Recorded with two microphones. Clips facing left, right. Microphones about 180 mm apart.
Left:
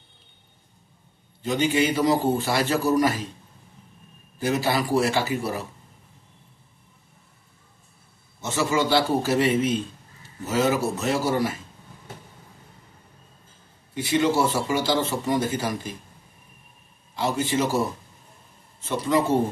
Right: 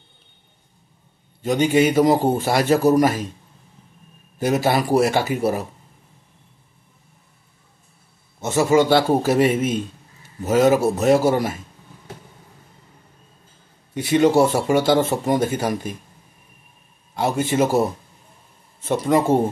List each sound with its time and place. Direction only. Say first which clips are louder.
1.4 s speech: right 5 dB; 45° right (ahead or behind)
4.5 s speech: right 5 dB; 45° right (ahead or behind)
8.5 s speech: right 7 dB; 45° right (ahead or behind)
14.1 s speech: right 6 dB; 50° right (ahead or behind)
17.1 s speech: right 4 dB; 50° right (ahead or behind)
18.9 s speech: right 4 dB; 50° right (ahead or behind)